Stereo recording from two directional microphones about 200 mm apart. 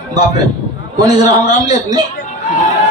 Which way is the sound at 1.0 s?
20° right (ahead or behind).